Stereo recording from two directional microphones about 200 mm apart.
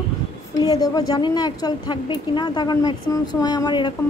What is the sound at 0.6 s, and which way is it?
A woman's voice, 20° left (ahead or behind).